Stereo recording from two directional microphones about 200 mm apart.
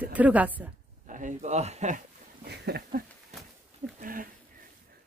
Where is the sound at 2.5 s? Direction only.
50° right (ahead or behind).